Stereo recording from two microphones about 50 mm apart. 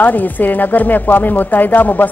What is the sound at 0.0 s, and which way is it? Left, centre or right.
A woman's voice, left.